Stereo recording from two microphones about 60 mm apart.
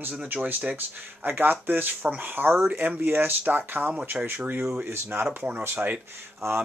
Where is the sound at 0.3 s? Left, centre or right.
Right.